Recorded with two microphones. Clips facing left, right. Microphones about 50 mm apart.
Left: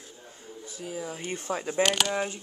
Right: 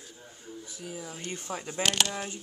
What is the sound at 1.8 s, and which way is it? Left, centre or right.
Speech, centre.